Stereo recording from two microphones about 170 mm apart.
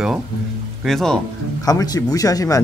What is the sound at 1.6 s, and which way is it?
Speech, 20° left (ahead or behind).